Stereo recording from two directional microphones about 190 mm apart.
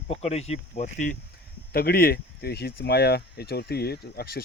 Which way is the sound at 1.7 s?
55° left (ahead or behind).